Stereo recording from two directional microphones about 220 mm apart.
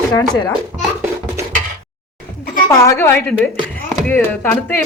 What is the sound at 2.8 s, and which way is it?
Speech, 15° left (ahead or behind).